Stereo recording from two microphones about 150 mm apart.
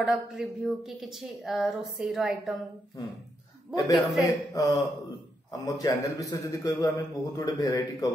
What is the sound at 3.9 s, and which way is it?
Speech, centre (ahead or behind).